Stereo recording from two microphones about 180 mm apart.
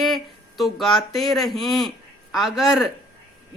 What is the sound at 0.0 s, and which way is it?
A woman's voice, centre (ahead or behind).